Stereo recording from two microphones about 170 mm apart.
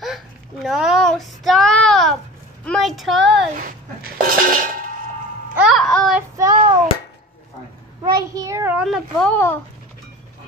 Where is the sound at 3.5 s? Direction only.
55° right (ahead or behind).